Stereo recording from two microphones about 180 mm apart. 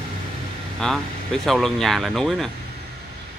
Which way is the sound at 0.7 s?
5° left (ahead or behind).